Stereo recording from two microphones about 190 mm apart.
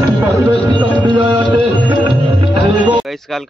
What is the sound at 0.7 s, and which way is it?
Music, 25° right (ahead or behind).